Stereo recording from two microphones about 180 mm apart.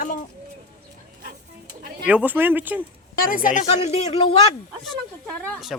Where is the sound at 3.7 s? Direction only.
35° left (ahead or behind).